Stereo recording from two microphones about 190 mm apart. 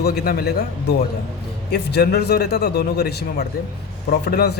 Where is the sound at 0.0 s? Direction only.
55° left (ahead or behind).